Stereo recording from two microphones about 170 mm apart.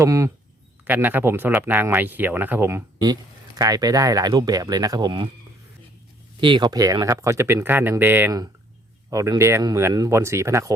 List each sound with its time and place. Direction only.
0.0 s speech: 20° right (ahead or behind)
6.4 s speech: 25° right (ahead or behind)